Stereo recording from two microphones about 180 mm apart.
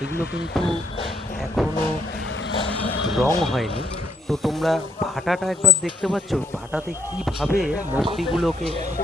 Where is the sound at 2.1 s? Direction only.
85° left.